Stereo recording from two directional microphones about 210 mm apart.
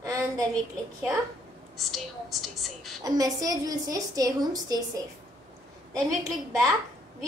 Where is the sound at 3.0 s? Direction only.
15° right (ahead or behind).